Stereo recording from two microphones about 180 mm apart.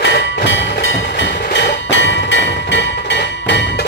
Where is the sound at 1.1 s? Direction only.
80° left.